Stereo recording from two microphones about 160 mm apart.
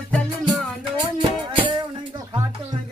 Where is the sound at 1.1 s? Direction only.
30° right (ahead or behind).